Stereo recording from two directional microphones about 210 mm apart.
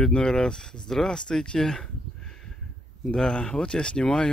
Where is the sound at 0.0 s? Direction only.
5° left (ahead or behind).